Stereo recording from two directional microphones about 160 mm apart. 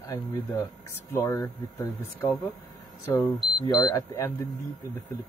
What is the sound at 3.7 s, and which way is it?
Speech, 25° left (ahead or behind).